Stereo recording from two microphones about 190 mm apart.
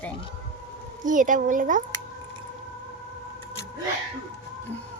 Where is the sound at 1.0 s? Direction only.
45° right (ahead or behind).